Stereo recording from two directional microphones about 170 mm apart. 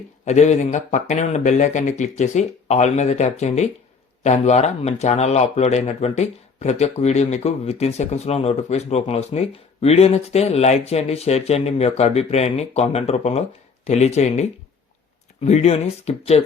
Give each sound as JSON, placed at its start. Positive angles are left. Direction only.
{"t": 0.3, "sound": "speech", "side_deg": 40}
{"t": 15.4, "sound": "speech", "side_deg": 40}